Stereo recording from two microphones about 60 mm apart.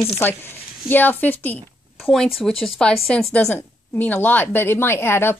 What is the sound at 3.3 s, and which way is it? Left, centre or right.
A woman's voice, left.